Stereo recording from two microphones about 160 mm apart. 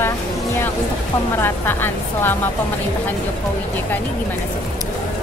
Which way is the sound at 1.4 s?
15° left (ahead or behind).